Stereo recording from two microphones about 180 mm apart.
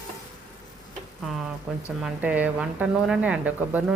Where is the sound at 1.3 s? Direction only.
Centre (ahead or behind).